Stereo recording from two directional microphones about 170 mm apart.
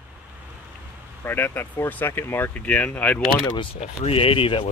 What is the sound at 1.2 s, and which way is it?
Speech, 10° left (ahead or behind).